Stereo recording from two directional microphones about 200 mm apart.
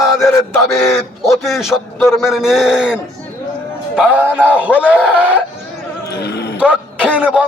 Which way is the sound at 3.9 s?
5° right (ahead or behind).